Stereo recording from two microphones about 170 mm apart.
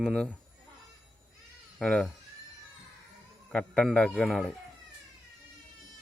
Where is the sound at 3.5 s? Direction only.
5° left (ahead or behind).